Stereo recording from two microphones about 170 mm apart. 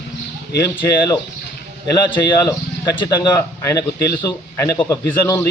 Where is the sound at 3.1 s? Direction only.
20° left (ahead or behind).